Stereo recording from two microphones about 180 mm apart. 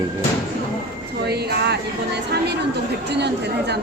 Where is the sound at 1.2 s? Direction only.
65° right (ahead or behind).